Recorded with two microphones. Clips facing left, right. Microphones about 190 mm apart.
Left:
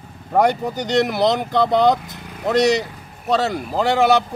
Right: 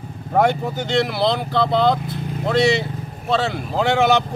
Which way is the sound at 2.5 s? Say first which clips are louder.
Left 1 dB; 40° left (ahead or behind).